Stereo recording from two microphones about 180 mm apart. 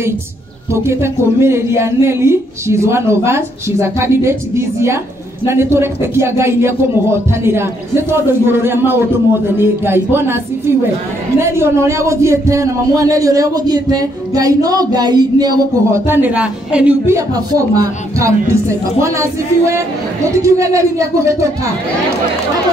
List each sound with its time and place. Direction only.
0.8 s a man's voice: 15° right (ahead or behind)